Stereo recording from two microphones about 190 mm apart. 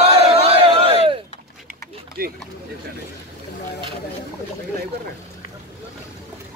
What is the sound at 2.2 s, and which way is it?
Speech, 50° right (ahead or behind).